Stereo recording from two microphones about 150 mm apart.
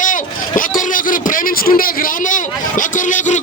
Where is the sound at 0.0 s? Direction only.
60° left (ahead or behind).